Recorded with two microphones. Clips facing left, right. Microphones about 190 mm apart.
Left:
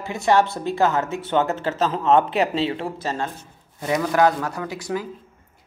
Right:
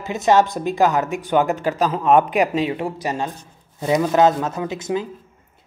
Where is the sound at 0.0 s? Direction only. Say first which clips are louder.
Right 3 dB; 20° right (ahead or behind).